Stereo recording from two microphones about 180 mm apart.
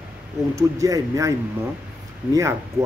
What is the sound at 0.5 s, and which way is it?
Speech, 20° right (ahead or behind).